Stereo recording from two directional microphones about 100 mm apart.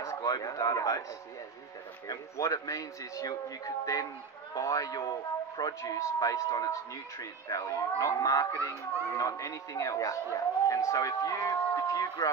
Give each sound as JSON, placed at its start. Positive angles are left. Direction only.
{"t": 0.0, "sound": "speech", "side_deg": 35}
{"t": 2.0, "sound": "speech", "side_deg": 35}